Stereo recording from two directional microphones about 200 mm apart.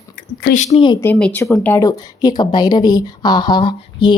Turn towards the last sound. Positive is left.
turn(degrees=25)  # may be behind; listen again after turning